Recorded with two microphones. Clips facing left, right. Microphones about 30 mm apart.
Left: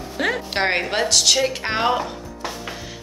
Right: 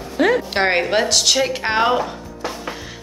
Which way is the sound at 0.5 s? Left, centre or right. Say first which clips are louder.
Right 3 dB; centre.